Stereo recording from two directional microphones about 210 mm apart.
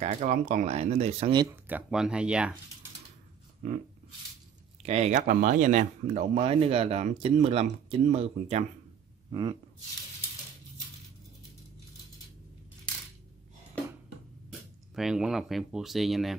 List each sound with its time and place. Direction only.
0.0 s speech: 35° right (ahead or behind); by 1.6 s 20° right (ahead or behind)
1.7 s speech: 5° right (ahead or behind)
3.6 s a sound: 35° right (ahead or behind)
4.8 s speech: 30° right (ahead or behind)
15.0 s speech: centre (ahead or behind)